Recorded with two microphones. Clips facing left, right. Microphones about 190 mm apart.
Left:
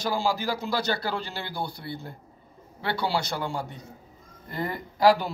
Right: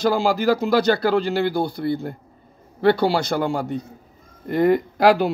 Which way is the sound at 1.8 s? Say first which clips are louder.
Right 14 dB; 60° right (ahead or behind).